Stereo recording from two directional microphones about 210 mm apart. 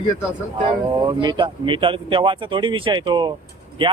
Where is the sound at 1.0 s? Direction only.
20° right (ahead or behind).